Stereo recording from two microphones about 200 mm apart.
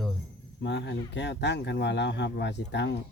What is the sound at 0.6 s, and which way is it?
Speech, 60° left (ahead or behind).